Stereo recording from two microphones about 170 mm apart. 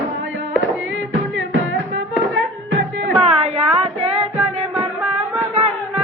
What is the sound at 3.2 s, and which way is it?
Music, 40° right (ahead or behind).